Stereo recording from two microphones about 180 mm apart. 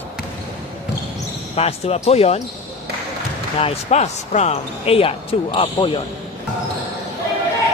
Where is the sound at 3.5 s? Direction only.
35° left (ahead or behind).